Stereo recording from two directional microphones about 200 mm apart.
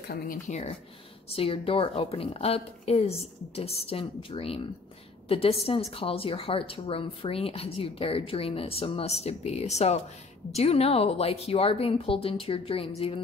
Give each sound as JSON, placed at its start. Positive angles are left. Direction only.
{"t": 0.1, "sound": "a woman's voice", "side_deg": 45}